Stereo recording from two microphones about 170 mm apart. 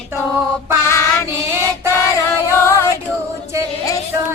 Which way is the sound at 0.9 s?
15° left (ahead or behind).